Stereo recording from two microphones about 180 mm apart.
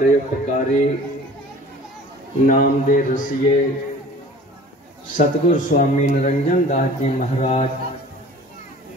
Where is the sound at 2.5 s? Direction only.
45° left (ahead or behind).